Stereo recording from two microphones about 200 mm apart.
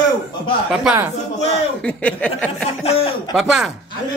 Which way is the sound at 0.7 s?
10° right (ahead or behind).